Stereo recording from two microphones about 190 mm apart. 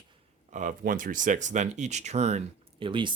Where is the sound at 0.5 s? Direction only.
45° right (ahead or behind).